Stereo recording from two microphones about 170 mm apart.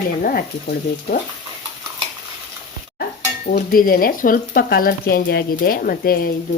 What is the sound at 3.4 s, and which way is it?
Speech, 60° left (ahead or behind).